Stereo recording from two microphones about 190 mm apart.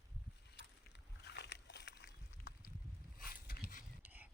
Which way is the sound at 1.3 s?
60° left (ahead or behind).